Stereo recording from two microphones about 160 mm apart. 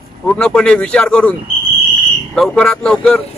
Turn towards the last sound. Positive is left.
turn(degrees=5)  # may be behind; listen again after turning